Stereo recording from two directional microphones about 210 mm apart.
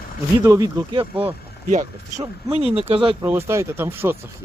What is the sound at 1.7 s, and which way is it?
Speech, 35° right (ahead or behind).